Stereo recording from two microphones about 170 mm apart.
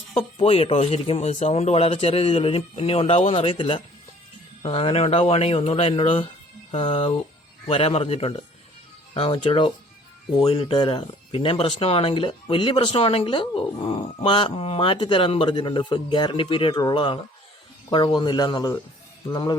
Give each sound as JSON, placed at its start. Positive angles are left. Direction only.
{"t": 0.3, "sound": "speech", "side_deg": 35}